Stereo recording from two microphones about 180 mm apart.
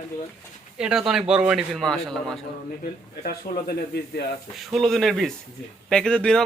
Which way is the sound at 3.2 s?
60° left (ahead or behind).